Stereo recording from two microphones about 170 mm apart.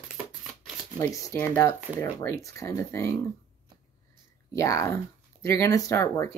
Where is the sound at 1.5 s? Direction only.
15° left (ahead or behind).